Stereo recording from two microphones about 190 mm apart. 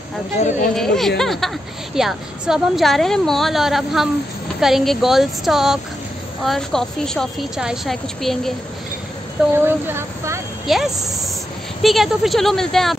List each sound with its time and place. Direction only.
0.4 s speech: 40° left (ahead or behind)
0.7 s a woman's voice: centre (ahead or behind)
9.5 s speech: 10° right (ahead or behind)
10.7 s a woman's voice: centre (ahead or behind)